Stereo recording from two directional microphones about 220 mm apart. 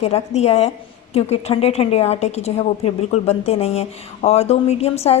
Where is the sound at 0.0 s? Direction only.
25° left (ahead or behind).